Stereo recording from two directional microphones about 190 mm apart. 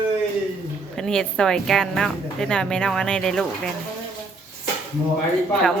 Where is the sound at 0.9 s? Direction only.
5° left (ahead or behind).